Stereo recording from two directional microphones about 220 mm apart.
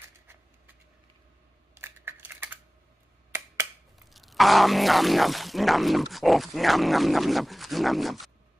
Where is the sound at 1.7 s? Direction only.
10° right (ahead or behind).